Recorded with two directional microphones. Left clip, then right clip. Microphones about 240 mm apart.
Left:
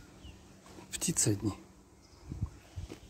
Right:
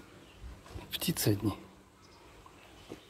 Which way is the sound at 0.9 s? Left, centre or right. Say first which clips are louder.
Right 1 dB; centre.